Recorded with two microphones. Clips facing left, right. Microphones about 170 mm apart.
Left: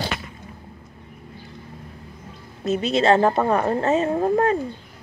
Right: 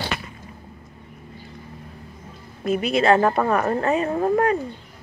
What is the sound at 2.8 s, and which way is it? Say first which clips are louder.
A woman's voice: left 1 dB; 25° left (ahead or behind).